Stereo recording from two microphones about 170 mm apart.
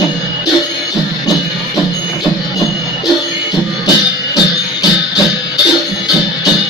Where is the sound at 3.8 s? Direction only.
25° left (ahead or behind).